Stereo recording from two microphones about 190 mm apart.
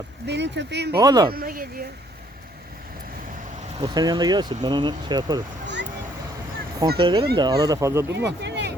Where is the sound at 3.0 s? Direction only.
50° right (ahead or behind).